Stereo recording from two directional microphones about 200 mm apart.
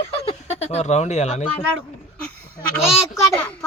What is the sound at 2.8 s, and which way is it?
Speech, centre (ahead or behind).